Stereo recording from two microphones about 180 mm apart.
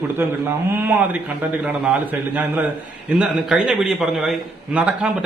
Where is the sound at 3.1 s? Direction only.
5° right (ahead or behind).